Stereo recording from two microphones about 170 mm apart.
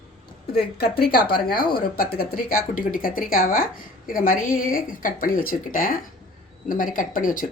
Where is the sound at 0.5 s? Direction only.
65° left (ahead or behind).